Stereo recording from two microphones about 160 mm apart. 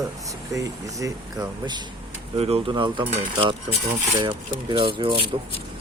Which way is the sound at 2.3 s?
40° right (ahead or behind).